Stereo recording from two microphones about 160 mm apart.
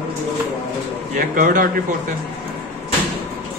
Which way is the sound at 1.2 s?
55° right (ahead or behind).